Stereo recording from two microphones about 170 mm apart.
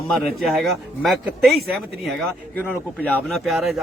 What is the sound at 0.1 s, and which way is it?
A man's voice, centre (ahead or behind).